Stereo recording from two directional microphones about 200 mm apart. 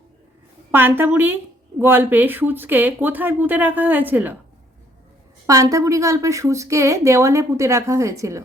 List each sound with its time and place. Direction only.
0.7 s a woman's voice: 10° right (ahead or behind)
5.5 s a woman's voice: 15° right (ahead or behind)